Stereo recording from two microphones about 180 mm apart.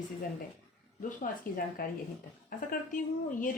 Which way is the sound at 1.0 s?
45° left (ahead or behind).